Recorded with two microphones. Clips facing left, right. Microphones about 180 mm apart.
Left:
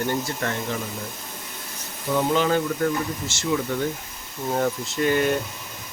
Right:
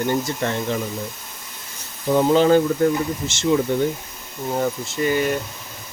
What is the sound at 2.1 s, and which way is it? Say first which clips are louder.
Speech: right 6 dB; 35° right (ahead or behind).